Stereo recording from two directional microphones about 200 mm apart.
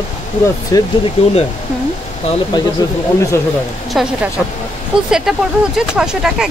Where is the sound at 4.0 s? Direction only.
Centre (ahead or behind).